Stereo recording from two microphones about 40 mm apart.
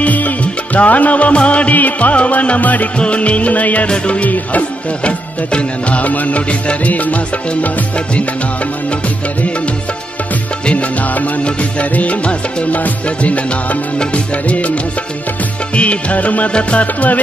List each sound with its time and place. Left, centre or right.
0.0 s music: left
1.8 s music: left
3.0 s music: left
3.9 s music: left
10.6 s music: left
15.7 s music: left